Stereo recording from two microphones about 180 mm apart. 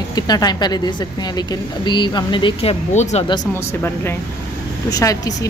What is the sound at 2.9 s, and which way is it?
Speech, 40° left (ahead or behind).